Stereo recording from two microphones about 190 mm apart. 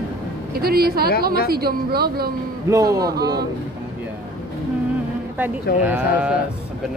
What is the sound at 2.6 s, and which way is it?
Speech, 20° right (ahead or behind).